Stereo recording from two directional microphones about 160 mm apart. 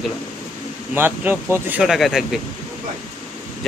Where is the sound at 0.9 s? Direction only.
15° right (ahead or behind).